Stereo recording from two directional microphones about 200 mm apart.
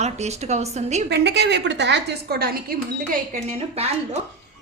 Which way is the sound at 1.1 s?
55° right (ahead or behind).